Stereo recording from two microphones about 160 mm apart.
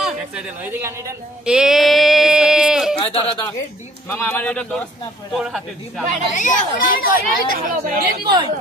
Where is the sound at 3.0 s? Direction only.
35° left (ahead or behind).